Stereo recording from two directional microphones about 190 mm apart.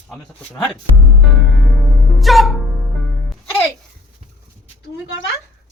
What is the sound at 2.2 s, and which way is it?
Speech, centre (ahead or behind).